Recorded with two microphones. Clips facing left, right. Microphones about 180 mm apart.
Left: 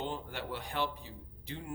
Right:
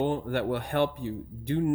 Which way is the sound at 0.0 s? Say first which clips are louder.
Right 12 dB; 60° right (ahead or behind).